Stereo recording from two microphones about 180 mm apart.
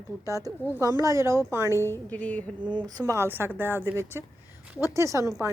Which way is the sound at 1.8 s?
10° left (ahead or behind).